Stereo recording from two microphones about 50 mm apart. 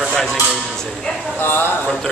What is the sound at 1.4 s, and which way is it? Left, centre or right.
Speech, left.